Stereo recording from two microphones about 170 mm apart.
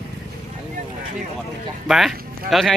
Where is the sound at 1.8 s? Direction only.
Centre (ahead or behind).